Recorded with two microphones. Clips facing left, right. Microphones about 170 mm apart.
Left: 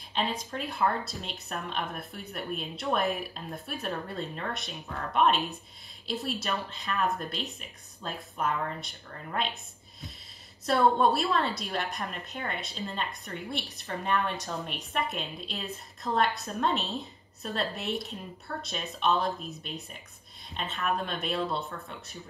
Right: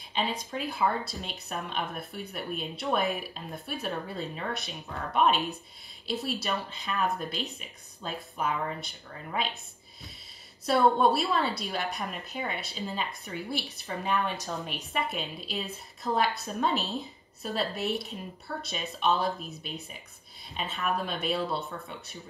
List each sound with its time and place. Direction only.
0.1 s a woman's voice: centre (ahead or behind)
10.6 s a woman's voice: centre (ahead or behind)